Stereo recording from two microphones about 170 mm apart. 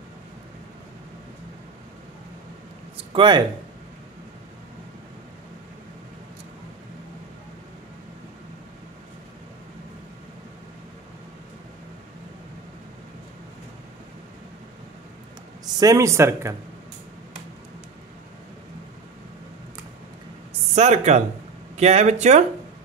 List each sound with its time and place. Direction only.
3.1 s speech: 25° right (ahead or behind)
15.8 s speech: 20° right (ahead or behind)
20.7 s speech: 40° right (ahead or behind)